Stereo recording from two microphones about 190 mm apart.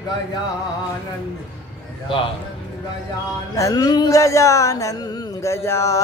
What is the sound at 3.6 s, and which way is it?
Music, 20° left (ahead or behind).